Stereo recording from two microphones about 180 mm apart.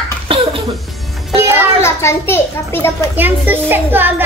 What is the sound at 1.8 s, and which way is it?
A child's voice, 15° left (ahead or behind).